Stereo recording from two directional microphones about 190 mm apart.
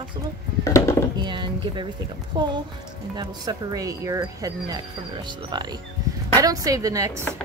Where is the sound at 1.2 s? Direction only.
25° right (ahead or behind).